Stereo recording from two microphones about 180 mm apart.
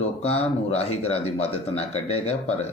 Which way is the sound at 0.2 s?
35° left (ahead or behind).